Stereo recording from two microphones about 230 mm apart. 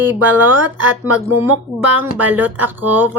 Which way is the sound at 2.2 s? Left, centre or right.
Centre.